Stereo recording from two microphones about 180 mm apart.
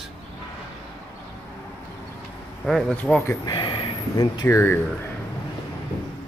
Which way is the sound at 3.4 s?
25° left (ahead or behind).